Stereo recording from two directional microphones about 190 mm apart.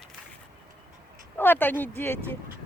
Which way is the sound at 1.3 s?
10° left (ahead or behind).